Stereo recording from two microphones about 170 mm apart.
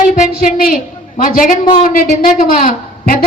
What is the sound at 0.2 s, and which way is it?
A woman's voice, 55° left (ahead or behind).